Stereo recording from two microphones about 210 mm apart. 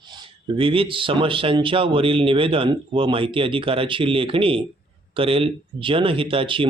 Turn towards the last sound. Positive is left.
turn(degrees=-25)  # may be behind; listen again after turning